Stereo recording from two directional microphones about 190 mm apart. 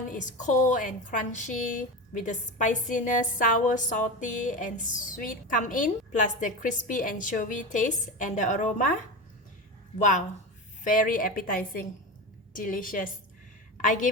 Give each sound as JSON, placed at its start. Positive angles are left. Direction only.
{"t": 0.1, "sound": "a woman's voice", "side_deg": 40}
{"t": 10.0, "sound": "a woman's voice", "side_deg": 40}